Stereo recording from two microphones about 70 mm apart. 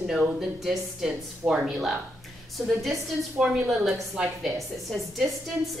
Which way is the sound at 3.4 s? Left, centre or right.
Centre.